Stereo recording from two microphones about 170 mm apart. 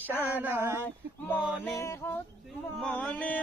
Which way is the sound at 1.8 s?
15° left (ahead or behind).